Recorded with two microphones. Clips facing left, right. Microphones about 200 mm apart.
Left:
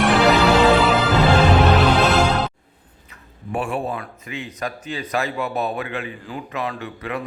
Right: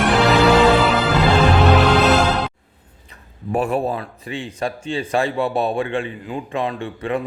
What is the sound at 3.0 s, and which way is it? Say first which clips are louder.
Speech: right 5 dB; 40° right (ahead or behind).